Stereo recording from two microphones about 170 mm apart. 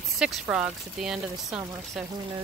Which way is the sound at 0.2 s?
5° right (ahead or behind).